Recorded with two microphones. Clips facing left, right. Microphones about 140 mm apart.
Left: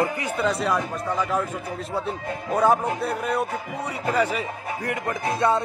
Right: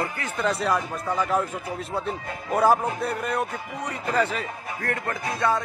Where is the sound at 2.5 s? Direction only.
Centre (ahead or behind); by 5.6 s 20° left (ahead or behind).